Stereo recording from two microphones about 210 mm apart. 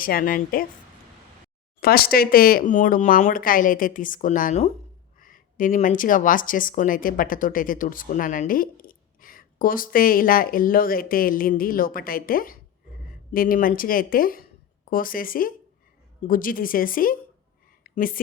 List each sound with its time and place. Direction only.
0.0 s speech: 40° left (ahead or behind)
1.8 s speech: 45° left (ahead or behind)
17.8 s a sound: 40° left (ahead or behind)